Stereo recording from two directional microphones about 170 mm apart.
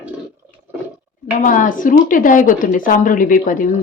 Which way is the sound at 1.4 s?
50° left (ahead or behind).